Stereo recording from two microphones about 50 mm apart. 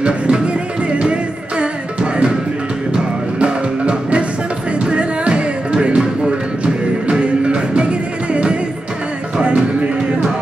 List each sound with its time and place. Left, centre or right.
0.0 s music: right
3.3 s music: right